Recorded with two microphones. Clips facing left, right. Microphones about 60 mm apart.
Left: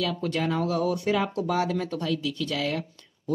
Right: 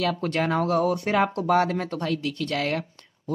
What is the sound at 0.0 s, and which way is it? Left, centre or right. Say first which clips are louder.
Speech: right 2 dB; right.